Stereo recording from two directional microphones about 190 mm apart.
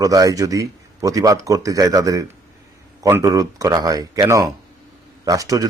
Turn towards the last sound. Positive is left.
turn(degrees=-20)  # may be behind; listen again after turning